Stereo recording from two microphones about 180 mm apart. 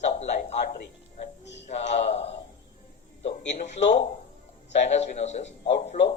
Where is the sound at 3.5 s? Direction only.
40° left (ahead or behind).